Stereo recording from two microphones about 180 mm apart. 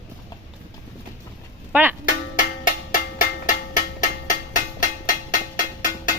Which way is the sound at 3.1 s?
50° left (ahead or behind).